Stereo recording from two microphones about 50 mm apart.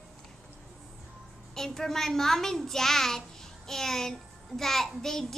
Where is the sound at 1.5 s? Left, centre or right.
Centre.